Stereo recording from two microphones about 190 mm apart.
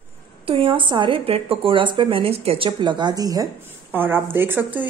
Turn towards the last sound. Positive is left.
turn(degrees=-10)  # may be behind; listen again after turning